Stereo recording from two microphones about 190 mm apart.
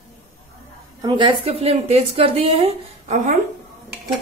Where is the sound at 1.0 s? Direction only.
25° right (ahead or behind).